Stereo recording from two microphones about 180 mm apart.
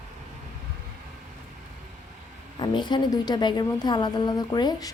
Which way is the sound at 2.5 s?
25° left (ahead or behind).